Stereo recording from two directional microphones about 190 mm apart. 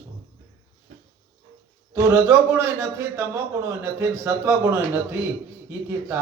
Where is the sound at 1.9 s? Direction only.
15° right (ahead or behind).